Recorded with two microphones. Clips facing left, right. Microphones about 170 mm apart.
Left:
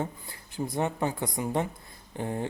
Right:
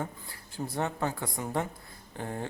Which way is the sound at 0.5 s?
15° left (ahead or behind).